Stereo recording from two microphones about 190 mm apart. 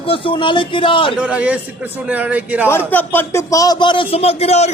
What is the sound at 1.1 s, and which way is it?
A man's voice, 5° right (ahead or behind).